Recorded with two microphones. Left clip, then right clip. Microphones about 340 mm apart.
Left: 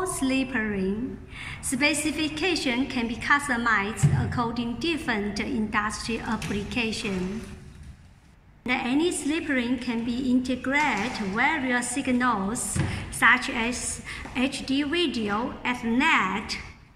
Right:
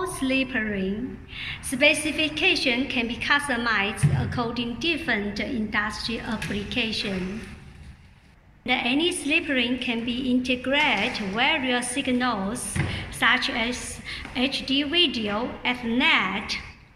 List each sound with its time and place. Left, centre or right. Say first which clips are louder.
0.0 s a woman's voice: right 1 dB; centre
8.6 s a woman's voice: right 2 dB; centre